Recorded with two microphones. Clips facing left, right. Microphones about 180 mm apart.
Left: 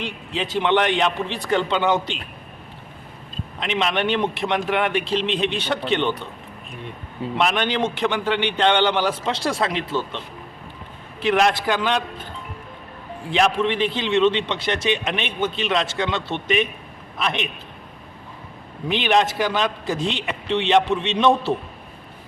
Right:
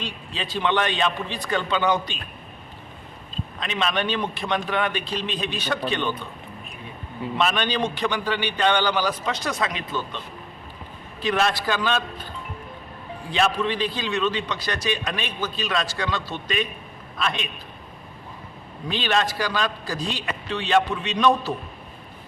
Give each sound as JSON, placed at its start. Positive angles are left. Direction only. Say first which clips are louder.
{"t": 0.0, "sound": "a man's voice", "louder": "left 5 dB", "side_deg": 20}
{"t": 3.6, "sound": "a man's voice", "louder": "left 3 dB", "side_deg": 20}
{"t": 7.3, "sound": "a man's voice", "louder": "left 2 dB", "side_deg": 15}
{"t": 11.2, "sound": "a man's voice", "louder": "left 4 dB", "side_deg": 20}
{"t": 13.3, "sound": "a man's voice", "louder": "left 3 dB", "side_deg": 20}
{"t": 18.9, "sound": "a man's voice", "louder": "left 4 dB", "side_deg": 20}